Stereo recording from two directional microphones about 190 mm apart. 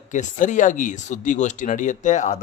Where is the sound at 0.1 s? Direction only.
40° left (ahead or behind).